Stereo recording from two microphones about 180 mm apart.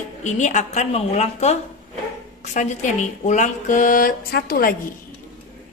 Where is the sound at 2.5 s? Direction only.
40° left (ahead or behind).